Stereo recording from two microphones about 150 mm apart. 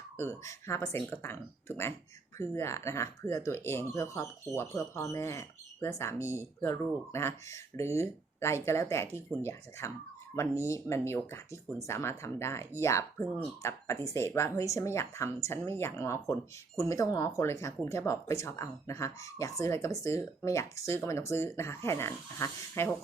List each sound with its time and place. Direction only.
0.2 s speech: 15° left (ahead or behind)